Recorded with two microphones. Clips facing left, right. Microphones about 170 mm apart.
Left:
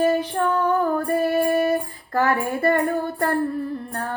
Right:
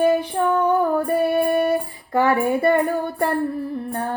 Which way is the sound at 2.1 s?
15° right (ahead or behind).